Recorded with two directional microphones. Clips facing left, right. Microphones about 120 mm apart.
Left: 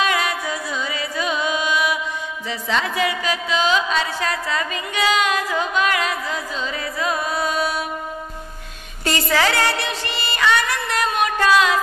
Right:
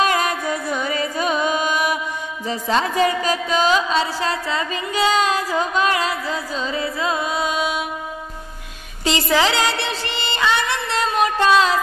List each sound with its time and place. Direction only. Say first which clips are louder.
0.0 s music: right 2 dB; 40° right (ahead or behind); by 7.8 s 20° right (ahead or behind)
9.0 s music: right 1 dB; 15° right (ahead or behind)